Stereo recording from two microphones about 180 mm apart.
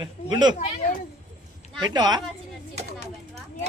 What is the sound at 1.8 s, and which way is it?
Speech, 25° right (ahead or behind).